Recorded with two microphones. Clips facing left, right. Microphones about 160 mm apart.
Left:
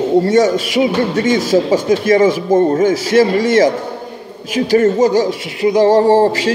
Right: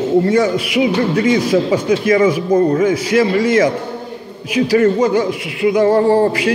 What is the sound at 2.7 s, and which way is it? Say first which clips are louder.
A man's voice: left 2 dB; 40° left (ahead or behind).